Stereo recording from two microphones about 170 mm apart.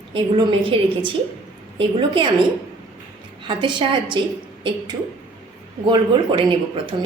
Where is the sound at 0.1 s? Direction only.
30° right (ahead or behind).